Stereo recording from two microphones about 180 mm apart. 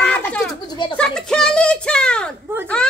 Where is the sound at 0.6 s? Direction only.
25° left (ahead or behind).